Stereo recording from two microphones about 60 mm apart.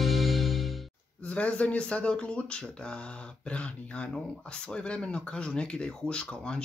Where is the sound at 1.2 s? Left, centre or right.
Centre.